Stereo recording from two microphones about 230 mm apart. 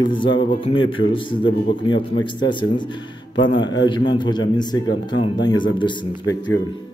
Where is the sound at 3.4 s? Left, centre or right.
Centre.